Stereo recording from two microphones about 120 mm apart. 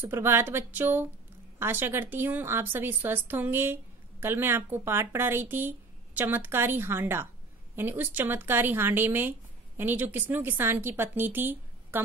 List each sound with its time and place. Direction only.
0.0 s a woman's voice: 20° right (ahead or behind)